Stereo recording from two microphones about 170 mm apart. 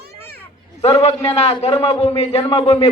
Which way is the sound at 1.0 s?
40° left (ahead or behind).